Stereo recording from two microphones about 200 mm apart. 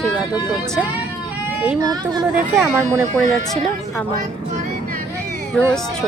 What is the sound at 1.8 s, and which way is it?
Speech, 20° right (ahead or behind).